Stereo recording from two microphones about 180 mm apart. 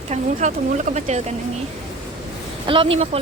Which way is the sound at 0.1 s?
40° right (ahead or behind).